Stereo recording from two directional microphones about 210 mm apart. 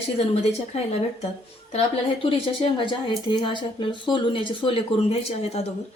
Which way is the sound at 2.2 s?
25° left (ahead or behind).